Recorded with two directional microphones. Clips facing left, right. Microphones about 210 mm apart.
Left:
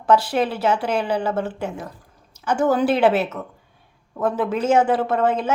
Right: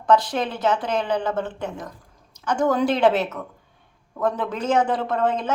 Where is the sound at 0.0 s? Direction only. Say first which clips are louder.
Left 2 dB; 10° left (ahead or behind).